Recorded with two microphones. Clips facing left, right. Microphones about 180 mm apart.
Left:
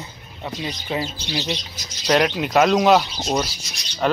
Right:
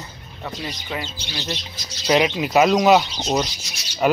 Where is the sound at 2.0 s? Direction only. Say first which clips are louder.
Even; 5° right (ahead or behind).